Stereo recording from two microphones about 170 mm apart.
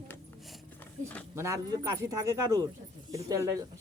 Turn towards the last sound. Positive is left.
turn(degrees=-20)  # may be behind; listen again after turning